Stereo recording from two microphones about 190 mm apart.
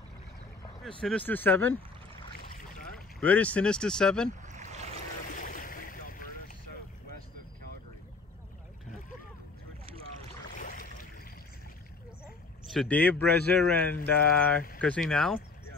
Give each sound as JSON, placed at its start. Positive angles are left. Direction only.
{"t": 1.0, "sound": "speech", "side_deg": 10}
{"t": 3.2, "sound": "a man's voice", "side_deg": 5}
{"t": 4.4, "sound": "boat", "side_deg": -40}
{"t": 5.3, "sound": "boat", "side_deg": 45}
{"t": 10.6, "sound": "boat", "side_deg": 45}
{"t": 12.6, "sound": "a man's voice", "side_deg": 5}